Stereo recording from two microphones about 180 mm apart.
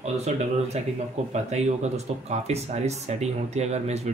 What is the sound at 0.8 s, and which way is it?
Speech, 35° right (ahead or behind).